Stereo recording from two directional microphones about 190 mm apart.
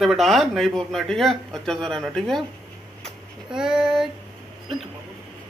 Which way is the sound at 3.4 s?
5° right (ahead or behind).